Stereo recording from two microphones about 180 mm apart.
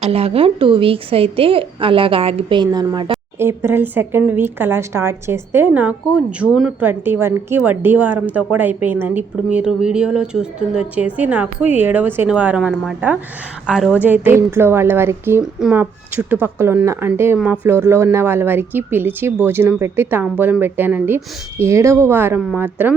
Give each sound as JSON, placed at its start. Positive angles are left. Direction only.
{"t": 0.0, "sound": "a woman's voice", "side_deg": -35}
{"t": 22.4, "sound": "a woman's voice", "side_deg": 0}